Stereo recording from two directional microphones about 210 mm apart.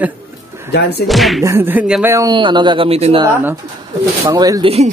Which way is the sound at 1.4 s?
10° right (ahead or behind).